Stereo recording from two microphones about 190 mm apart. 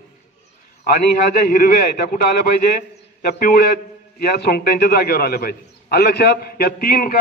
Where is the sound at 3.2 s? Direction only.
50° left (ahead or behind).